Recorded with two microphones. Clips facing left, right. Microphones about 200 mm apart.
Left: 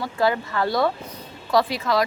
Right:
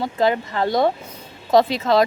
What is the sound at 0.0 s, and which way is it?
Speech, 20° right (ahead or behind).